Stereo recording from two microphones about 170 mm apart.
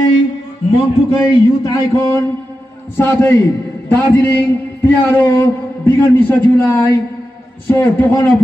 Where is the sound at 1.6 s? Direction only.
20° left (ahead or behind).